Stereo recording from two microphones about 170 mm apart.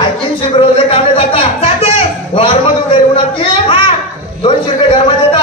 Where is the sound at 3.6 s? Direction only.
30° left (ahead or behind).